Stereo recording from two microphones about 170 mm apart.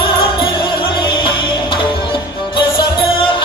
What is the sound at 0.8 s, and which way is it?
Music, 30° left (ahead or behind).